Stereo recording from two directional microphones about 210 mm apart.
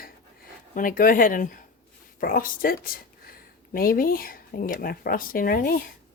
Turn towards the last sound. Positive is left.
turn(degrees=45)  # may be behind; listen again after turning